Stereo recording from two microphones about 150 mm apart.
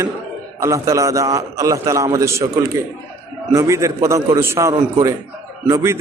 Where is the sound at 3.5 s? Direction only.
20° right (ahead or behind).